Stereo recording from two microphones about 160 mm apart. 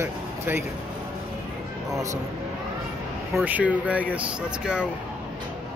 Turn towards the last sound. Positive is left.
turn(degrees=-5)  # may be behind; listen again after turning